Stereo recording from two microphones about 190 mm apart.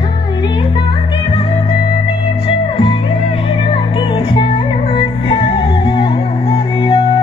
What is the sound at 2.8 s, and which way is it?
Music, 30° left (ahead or behind).